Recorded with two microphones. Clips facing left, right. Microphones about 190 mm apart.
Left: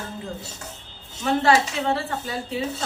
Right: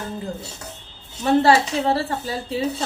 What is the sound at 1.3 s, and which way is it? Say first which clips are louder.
Speech: right 4 dB; 35° right (ahead or behind).